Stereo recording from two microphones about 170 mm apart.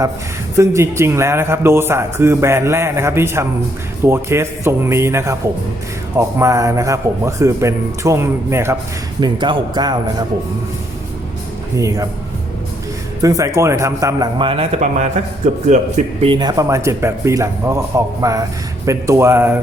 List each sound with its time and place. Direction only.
0.5 s a man's voice: 15° right (ahead or behind)
9.2 s speech: 25° right (ahead or behind)
11.8 s speech: 20° right (ahead or behind)
13.2 s speech: 20° right (ahead or behind); by 15.9 s 45° right (ahead or behind)
16.2 s a man's voice: 25° right (ahead or behind)